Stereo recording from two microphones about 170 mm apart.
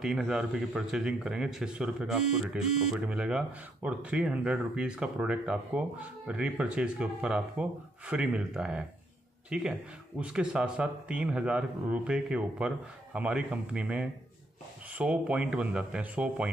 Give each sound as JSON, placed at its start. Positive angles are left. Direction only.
{"t": 0.0, "sound": "speech", "side_deg": -5}